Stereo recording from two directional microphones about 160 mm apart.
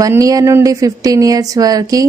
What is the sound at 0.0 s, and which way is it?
Speech, 20° right (ahead or behind).